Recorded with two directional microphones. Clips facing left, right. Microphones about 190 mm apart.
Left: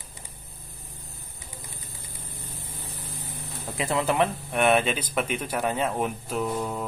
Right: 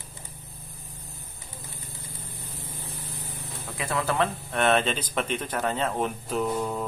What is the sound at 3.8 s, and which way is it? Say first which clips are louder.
Speech: left 3 dB; 20° left (ahead or behind).